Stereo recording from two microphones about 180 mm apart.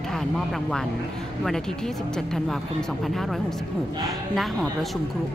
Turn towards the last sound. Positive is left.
turn(degrees=0)  # may be behind; listen again after turning